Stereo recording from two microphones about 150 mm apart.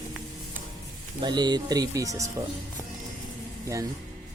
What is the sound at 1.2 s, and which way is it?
Speech, 30° right (ahead or behind).